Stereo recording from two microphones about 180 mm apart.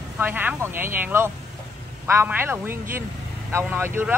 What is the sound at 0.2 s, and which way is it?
Speech, 10° right (ahead or behind).